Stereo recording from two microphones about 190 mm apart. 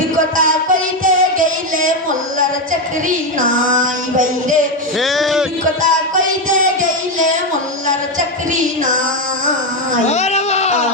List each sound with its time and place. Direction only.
0.3 s music: 45° right (ahead or behind)
3.1 s music: 45° right (ahead or behind)
4.9 s music: centre (ahead or behind)
10.1 s a sound: 35° left (ahead or behind)